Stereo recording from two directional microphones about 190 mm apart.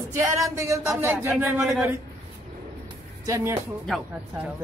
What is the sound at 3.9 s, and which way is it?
Speech, centre (ahead or behind).